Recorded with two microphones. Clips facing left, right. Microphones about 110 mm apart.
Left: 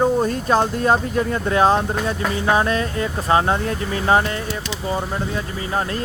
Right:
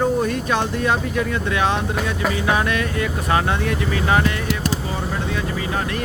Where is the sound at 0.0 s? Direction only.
35° left (ahead or behind).